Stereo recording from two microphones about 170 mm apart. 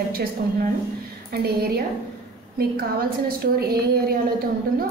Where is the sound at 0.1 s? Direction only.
60° right (ahead or behind).